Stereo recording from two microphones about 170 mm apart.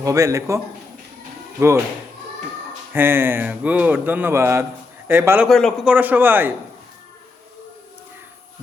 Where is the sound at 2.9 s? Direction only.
15° right (ahead or behind).